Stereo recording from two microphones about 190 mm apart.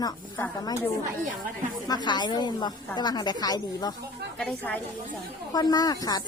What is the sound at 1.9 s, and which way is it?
A woman's voice, 20° left (ahead or behind).